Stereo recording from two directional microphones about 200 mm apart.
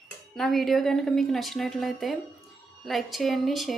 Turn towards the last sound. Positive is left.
turn(degrees=0)  # may be behind; listen again after turning